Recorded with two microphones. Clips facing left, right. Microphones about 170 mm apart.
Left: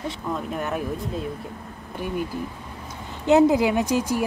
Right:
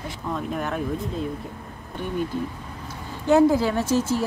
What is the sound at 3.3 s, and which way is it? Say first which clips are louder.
Speech: left 1 dB; 20° left (ahead or behind).